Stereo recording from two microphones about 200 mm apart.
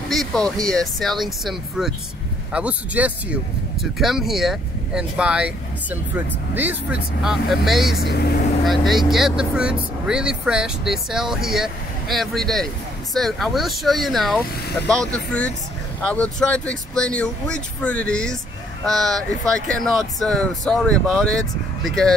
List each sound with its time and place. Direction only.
0.1 s speech: centre (ahead or behind)
8.0 s speech: 55° left (ahead or behind)
8.6 s speech: centre (ahead or behind)